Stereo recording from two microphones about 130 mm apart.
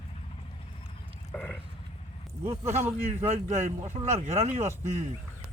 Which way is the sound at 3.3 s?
60° right (ahead or behind).